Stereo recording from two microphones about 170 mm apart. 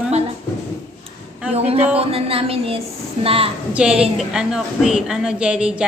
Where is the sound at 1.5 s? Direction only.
40° right (ahead or behind).